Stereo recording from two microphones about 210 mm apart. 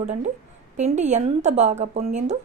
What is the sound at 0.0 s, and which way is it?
Speech, 35° right (ahead or behind).